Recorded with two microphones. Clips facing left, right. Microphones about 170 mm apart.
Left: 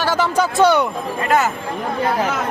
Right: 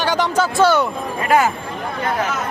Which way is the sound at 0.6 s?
20° left (ahead or behind).